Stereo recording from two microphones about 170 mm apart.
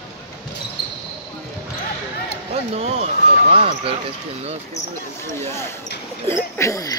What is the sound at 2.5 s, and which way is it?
Basketball bounce, 35° right (ahead or behind).